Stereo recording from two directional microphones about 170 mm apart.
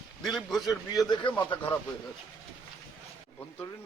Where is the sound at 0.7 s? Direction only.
20° left (ahead or behind).